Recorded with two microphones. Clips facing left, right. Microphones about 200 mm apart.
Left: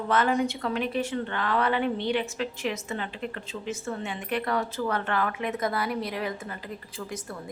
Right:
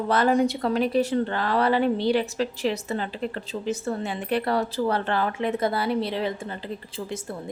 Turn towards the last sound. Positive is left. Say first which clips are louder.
# right 5 dB
turn(degrees=-30)  # may be behind; listen again after turning